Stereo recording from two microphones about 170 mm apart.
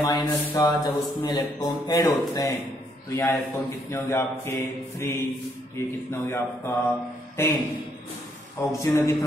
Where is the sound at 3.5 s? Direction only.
20° left (ahead or behind).